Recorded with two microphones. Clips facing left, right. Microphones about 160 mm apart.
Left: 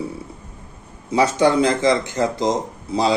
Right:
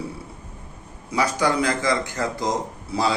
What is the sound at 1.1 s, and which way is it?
Speech, 25° left (ahead or behind).